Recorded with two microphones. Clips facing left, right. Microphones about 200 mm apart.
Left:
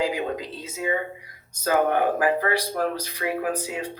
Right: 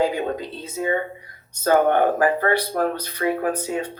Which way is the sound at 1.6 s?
35° right (ahead or behind).